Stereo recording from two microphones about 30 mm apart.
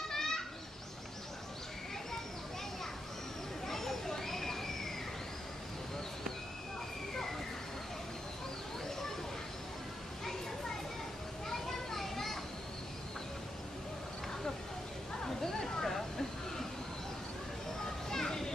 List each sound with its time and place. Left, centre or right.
0.1 s bird: centre
3.6 s children playing: centre
11.4 s children playing: centre
15.2 s a sound: centre
18.1 s children playing: centre